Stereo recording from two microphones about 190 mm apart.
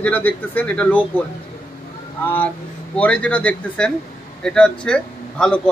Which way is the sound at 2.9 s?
5° left (ahead or behind).